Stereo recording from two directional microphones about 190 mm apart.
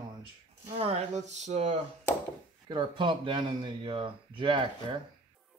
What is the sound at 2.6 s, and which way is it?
Speech, 25° right (ahead or behind).